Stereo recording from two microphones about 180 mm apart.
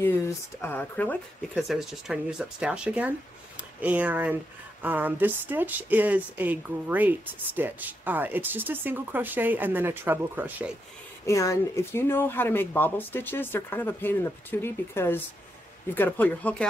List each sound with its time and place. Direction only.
0.6 s speech: 10° left (ahead or behind)
1.5 s speech: centre (ahead or behind)
11.2 s speech: 15° left (ahead or behind)